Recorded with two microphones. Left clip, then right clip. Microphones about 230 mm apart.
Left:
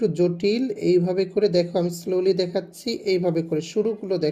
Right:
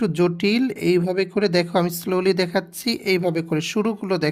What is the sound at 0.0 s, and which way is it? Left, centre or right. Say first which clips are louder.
Speech: even; right.